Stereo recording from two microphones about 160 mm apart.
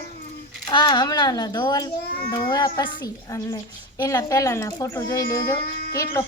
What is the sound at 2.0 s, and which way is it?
Speech, 70° left (ahead or behind).